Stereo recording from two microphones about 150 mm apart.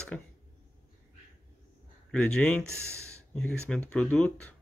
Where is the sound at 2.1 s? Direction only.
5° left (ahead or behind).